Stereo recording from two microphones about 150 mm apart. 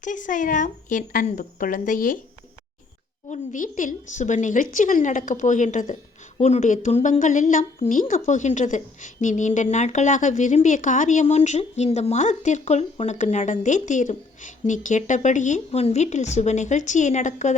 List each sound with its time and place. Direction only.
0.0 s a woman's voice: 60° left (ahead or behind)
3.2 s a woman's voice: 55° left (ahead or behind)